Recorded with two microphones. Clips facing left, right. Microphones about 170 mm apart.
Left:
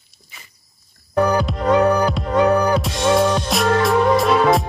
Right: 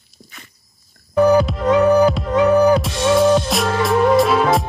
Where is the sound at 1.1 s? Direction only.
5° right (ahead or behind).